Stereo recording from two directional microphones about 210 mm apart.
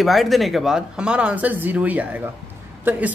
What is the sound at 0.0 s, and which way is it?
A man's voice, centre (ahead or behind).